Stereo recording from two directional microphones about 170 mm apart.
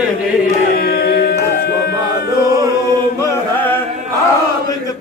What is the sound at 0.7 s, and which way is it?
Carnatic music, 65° left (ahead or behind).